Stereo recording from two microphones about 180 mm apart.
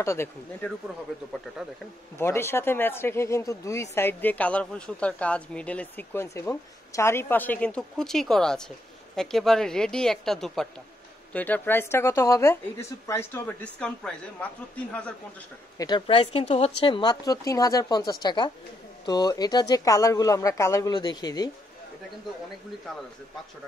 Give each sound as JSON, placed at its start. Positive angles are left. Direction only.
{"t": 0.0, "sound": "speech", "side_deg": 15}
{"t": 2.1, "sound": "speech", "side_deg": 15}
{"t": 15.8, "sound": "speech", "side_deg": 25}